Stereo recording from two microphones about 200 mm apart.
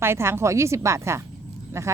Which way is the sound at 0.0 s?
10° right (ahead or behind).